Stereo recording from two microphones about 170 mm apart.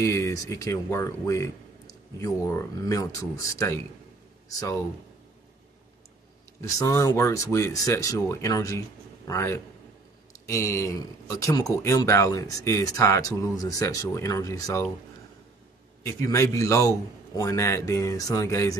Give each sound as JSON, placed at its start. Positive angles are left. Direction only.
{"t": 0.0, "sound": "speech", "side_deg": 15}
{"t": 6.6, "sound": "speech", "side_deg": 20}
{"t": 16.0, "sound": "speech", "side_deg": 20}